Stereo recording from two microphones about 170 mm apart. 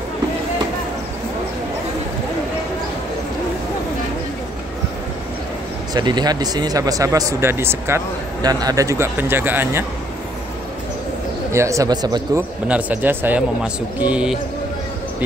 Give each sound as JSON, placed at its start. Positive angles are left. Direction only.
{"t": 5.9, "sound": "speech", "side_deg": -25}
{"t": 11.5, "sound": "speech", "side_deg": -15}
{"t": 12.4, "sound": "speech", "side_deg": -10}